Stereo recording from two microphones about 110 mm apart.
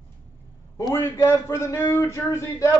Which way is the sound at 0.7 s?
25° left (ahead or behind).